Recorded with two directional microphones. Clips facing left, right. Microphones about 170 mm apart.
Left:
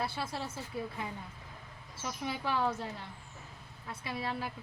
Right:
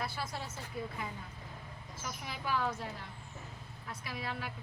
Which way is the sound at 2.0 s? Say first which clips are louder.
Left 6 dB; 30° left (ahead or behind).